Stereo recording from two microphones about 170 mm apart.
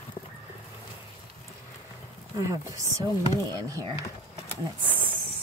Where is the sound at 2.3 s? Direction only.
20° right (ahead or behind).